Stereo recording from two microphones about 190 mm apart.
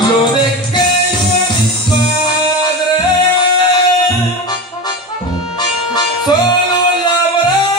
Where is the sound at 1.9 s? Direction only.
25° left (ahead or behind).